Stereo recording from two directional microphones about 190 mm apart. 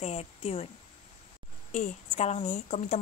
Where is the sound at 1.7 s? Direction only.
35° left (ahead or behind).